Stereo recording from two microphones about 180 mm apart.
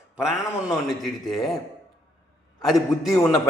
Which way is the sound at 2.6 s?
Centre (ahead or behind).